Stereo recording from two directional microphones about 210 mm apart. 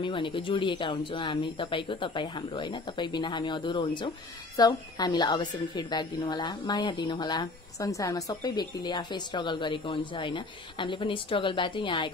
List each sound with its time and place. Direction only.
0.0 s a woman's voice: 25° left (ahead or behind)